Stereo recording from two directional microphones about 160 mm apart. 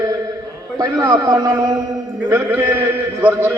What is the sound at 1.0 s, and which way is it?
A man's voice, 25° right (ahead or behind).